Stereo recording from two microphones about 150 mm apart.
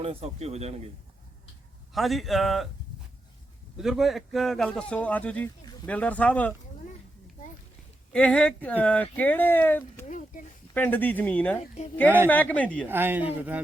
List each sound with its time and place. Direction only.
0.0 s a man's voice: 40° right (ahead or behind)
1.9 s a man's voice: centre (ahead or behind)
3.8 s a man's voice: centre (ahead or behind)
8.1 s speech: 5° left (ahead or behind)
10.1 s a sound: 60° left (ahead or behind)
10.8 s speech: 10° left (ahead or behind)
12.9 s speech: 15° right (ahead or behind)